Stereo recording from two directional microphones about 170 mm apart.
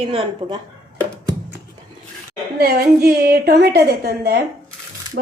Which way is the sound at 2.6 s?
65° right (ahead or behind).